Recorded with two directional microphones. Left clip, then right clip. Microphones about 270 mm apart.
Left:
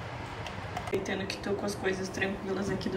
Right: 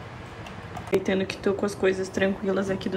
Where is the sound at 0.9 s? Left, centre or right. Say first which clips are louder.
Right 9 dB; centre.